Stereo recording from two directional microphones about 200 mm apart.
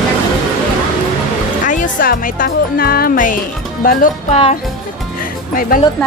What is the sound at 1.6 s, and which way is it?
Speech, 40° left (ahead or behind).